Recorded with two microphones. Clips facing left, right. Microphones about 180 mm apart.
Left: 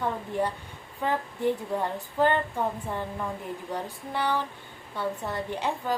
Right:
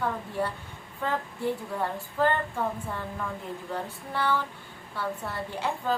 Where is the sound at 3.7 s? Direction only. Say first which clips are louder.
Even; 15° left (ahead or behind).